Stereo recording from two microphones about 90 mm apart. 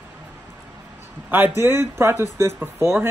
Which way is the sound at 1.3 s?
25° right (ahead or behind).